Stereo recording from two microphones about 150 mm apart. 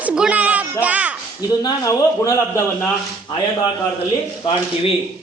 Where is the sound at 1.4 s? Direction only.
25° left (ahead or behind).